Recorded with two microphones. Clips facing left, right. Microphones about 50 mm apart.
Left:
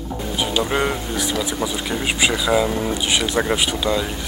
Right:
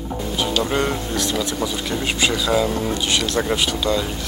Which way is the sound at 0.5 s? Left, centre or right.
Centre.